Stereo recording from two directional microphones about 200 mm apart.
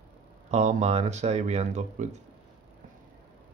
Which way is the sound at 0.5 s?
35° right (ahead or behind).